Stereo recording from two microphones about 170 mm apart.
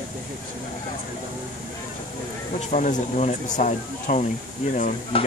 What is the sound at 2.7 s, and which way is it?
Speech, 45° left (ahead or behind).